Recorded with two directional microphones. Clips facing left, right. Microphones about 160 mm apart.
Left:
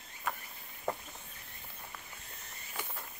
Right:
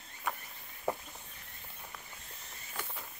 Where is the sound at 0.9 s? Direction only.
5° right (ahead or behind).